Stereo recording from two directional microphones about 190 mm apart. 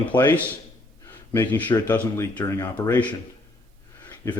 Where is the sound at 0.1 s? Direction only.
10° left (ahead or behind).